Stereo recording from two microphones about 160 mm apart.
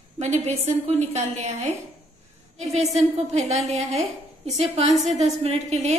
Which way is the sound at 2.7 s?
45° right (ahead or behind).